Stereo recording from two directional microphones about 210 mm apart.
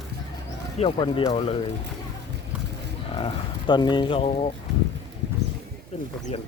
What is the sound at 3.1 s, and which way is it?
Speech, 20° left (ahead or behind).